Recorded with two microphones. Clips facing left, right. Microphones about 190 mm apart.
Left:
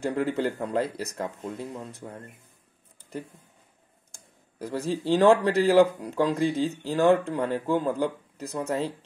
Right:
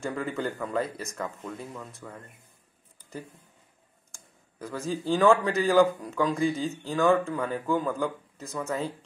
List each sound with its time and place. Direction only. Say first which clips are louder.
0.0 s speech: left 5 dB; 35° left (ahead or behind)
4.6 s speech: left 3 dB; 35° left (ahead or behind)